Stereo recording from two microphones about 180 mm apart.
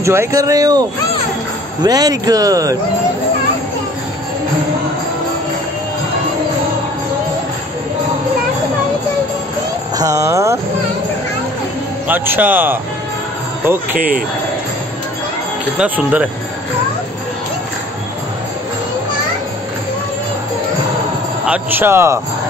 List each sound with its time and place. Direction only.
0.0 s speech: 15° right (ahead or behind)
9.9 s a man's voice: 20° right (ahead or behind)
12.1 s a man's voice: 10° right (ahead or behind)
13.9 s speech: 50° right (ahead or behind)
15.8 s a man's voice: 5° right (ahead or behind)
21.5 s a man's voice: 10° right (ahead or behind)